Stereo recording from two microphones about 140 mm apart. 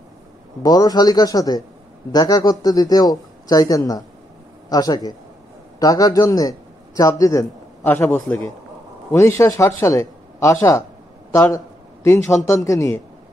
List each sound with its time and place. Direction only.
0.6 s a man's voice: 25° left (ahead or behind)
11.3 s a sound: 20° left (ahead or behind)
12.4 s speech: 25° left (ahead or behind)